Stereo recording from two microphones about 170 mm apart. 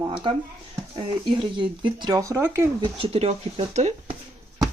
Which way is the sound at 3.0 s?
35° right (ahead or behind).